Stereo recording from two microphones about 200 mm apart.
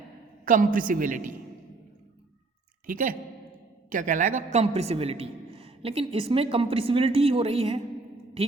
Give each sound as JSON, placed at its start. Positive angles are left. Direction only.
{"t": 0.4, "sound": "a man's voice", "side_deg": -40}
{"t": 2.8, "sound": "a man's voice", "side_deg": -45}
{"t": 4.5, "sound": "a woman's voice", "side_deg": -30}